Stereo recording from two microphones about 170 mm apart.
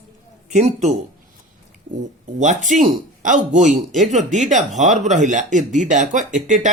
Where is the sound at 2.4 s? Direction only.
45° right (ahead or behind).